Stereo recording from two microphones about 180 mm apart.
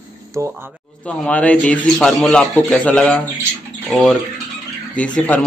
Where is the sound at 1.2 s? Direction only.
5° left (ahead or behind).